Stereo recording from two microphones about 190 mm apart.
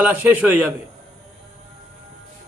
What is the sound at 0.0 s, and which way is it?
Speech, 5° right (ahead or behind).